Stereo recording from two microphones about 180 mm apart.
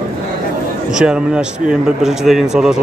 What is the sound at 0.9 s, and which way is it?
A man's voice, 5° right (ahead or behind).